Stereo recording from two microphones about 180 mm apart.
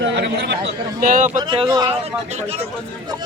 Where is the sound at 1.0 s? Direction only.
50° right (ahead or behind).